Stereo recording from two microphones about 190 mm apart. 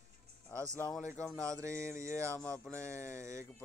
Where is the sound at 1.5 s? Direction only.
15° right (ahead or behind).